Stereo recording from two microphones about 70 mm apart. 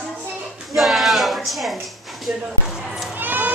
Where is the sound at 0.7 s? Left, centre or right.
Centre.